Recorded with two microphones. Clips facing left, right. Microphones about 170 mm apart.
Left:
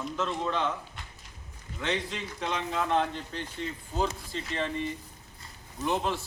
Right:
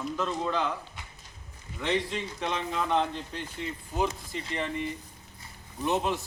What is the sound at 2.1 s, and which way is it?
A man's voice, 20° right (ahead or behind).